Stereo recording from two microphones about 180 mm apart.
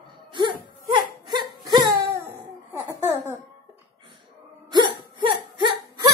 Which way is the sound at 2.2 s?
15° right (ahead or behind).